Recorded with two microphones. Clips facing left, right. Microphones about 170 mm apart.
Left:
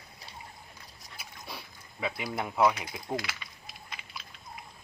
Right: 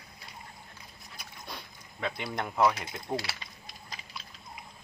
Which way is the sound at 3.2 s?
30° right (ahead or behind).